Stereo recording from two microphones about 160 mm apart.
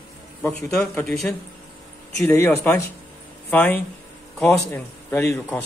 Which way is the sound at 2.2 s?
15° left (ahead or behind).